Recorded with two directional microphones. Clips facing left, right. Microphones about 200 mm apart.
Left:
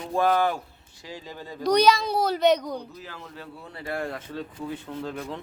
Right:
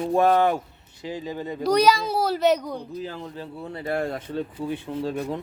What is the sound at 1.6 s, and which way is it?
A child's voice, 5° right (ahead or behind).